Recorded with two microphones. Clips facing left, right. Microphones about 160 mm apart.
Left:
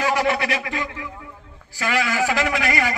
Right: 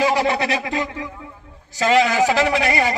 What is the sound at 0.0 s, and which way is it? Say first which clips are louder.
A man's voice: right 2 dB; 25° right (ahead or behind).